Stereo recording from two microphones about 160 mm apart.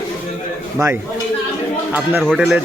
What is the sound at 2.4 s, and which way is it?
Speech, 10° right (ahead or behind).